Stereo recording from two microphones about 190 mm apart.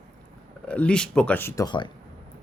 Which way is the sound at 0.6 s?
5° left (ahead or behind).